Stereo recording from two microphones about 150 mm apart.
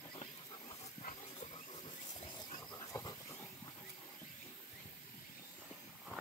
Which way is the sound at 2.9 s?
20° left (ahead or behind).